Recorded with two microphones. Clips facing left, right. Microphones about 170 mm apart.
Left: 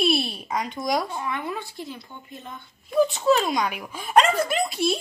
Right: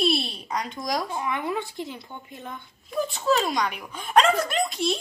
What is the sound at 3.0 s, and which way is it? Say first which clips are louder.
Speech: left 3 dB; centre (ahead or behind).